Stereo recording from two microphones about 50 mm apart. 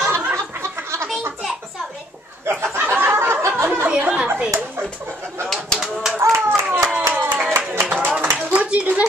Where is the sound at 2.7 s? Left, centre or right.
Right.